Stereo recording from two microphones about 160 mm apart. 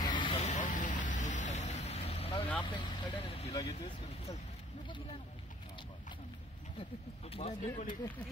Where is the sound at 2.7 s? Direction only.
25° left (ahead or behind).